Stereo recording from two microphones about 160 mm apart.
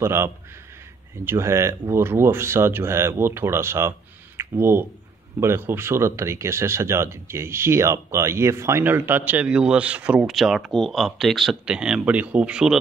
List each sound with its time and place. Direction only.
0.0 s speech: 15° right (ahead or behind)